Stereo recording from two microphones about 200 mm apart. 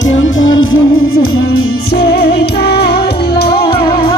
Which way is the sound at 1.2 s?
90° left.